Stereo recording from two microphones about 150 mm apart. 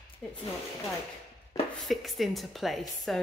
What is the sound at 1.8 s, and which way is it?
Speech, centre (ahead or behind).